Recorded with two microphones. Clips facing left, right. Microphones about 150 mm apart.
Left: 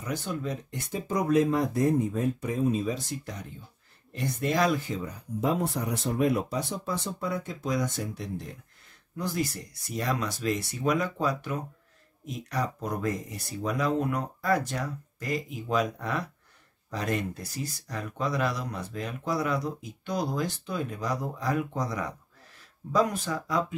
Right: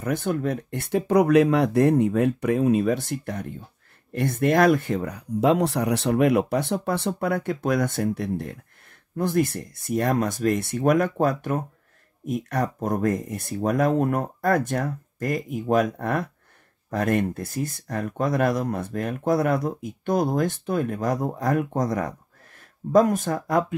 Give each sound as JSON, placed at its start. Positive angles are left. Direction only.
{"t": 0.0, "sound": "speech", "side_deg": -55}